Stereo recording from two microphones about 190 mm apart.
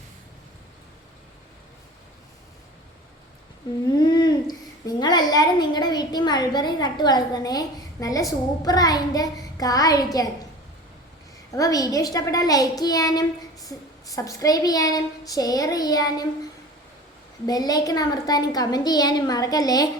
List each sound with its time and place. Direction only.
3.9 s a woman's voice: 25° left (ahead or behind)
11.5 s a woman's voice: 20° left (ahead or behind)
17.4 s a woman's voice: 20° left (ahead or behind)